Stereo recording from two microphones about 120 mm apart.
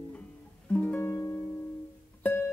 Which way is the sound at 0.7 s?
15° left (ahead or behind).